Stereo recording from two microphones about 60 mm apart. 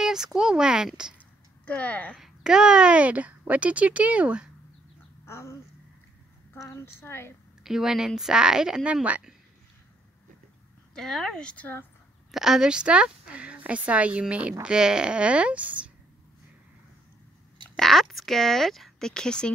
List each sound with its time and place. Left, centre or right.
0.0 s speech: centre
1.7 s speech: left
2.1 s speech: centre
5.2 s speech: left
6.6 s a woman's voice: left
7.6 s speech: centre
11.0 s speech: centre
11.4 s speech: left
12.3 s speech: centre; by 15.9 s right
17.7 s speech: centre